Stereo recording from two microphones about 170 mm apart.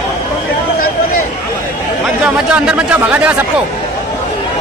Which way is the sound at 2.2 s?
5° right (ahead or behind).